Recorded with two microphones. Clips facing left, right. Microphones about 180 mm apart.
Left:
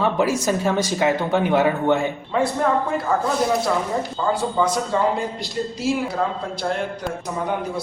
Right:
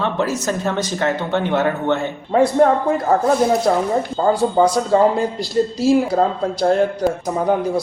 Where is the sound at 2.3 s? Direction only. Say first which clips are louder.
Right 9 dB; 40° right (ahead or behind).